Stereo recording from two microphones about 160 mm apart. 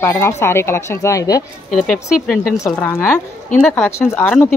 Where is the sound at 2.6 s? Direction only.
15° left (ahead or behind).